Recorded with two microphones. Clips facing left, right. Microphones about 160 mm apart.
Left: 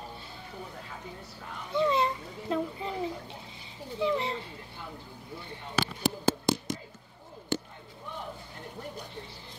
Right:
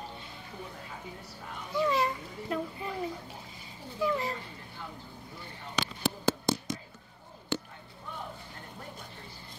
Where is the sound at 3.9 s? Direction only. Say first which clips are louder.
Left 2 dB; 25° left (ahead or behind).